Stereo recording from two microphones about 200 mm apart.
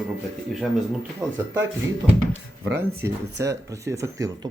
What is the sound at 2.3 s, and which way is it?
Speech, 60° right (ahead or behind).